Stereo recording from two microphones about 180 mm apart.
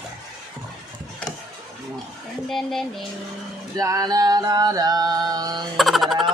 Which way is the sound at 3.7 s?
20° right (ahead or behind).